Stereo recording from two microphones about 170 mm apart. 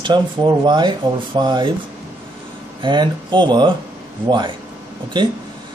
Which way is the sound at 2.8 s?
25° right (ahead or behind).